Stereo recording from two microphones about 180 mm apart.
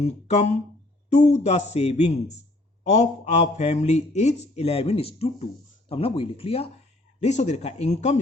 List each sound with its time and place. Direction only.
0.0 s a man's voice: 40° left (ahead or behind)